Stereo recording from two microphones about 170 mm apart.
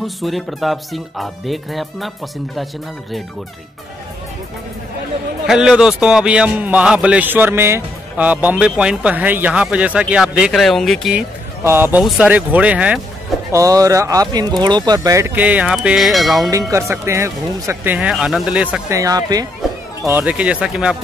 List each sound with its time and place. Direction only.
0.0 s speech: centre (ahead or behind)
5.5 s a man's voice: 5° right (ahead or behind)
11.6 s a man's voice: 15° right (ahead or behind)
12.0 s a man's voice: 5° right (ahead or behind)
13.5 s a man's voice: 20° right (ahead or behind); by 16.4 s centre (ahead or behind)
16.9 s a man's voice: 15° right (ahead or behind)
17.9 s speech: 5° right (ahead or behind)
18.9 s speech: 20° right (ahead or behind)
20.2 s speech: 5° right (ahead or behind)